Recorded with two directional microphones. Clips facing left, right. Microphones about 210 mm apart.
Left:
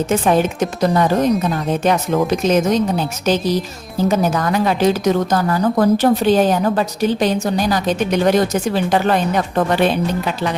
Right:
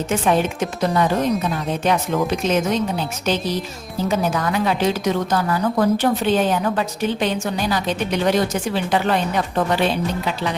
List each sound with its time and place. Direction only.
0.1 s a woman's voice: 40° left (ahead or behind)